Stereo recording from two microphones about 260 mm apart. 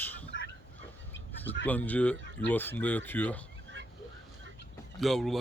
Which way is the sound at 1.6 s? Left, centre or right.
Centre.